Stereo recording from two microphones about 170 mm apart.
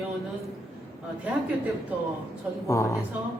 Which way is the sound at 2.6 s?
15° left (ahead or behind).